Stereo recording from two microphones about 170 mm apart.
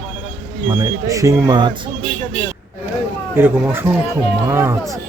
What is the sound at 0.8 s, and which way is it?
Speech, 20° right (ahead or behind).